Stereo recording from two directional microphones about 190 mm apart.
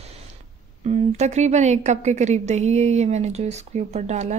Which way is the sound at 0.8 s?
35° right (ahead or behind).